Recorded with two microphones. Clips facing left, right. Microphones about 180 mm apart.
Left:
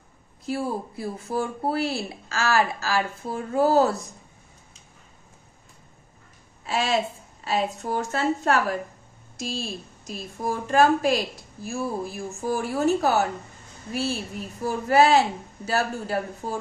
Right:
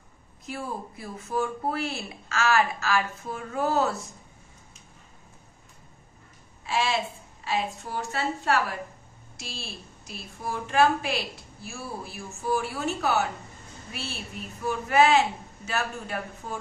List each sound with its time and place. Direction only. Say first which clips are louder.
0.5 s a woman's voice: left 7 dB; 35° left (ahead or behind)
6.7 s a woman's voice: left 3 dB; 40° left (ahead or behind)
14.6 s a woman's voice: left 3 dB; 35° left (ahead or behind)